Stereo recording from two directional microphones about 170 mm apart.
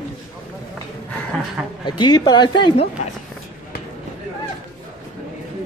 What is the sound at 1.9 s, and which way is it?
Speech, 25° left (ahead or behind).